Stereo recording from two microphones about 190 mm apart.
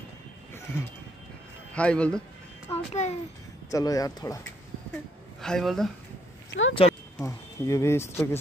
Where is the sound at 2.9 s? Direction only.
35° left (ahead or behind).